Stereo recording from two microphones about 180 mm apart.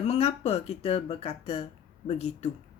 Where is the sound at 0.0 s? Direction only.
35° left (ahead or behind).